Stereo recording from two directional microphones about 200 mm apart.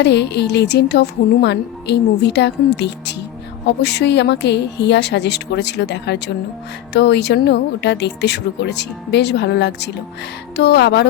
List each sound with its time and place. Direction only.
0.0 s speech: 60° left (ahead or behind)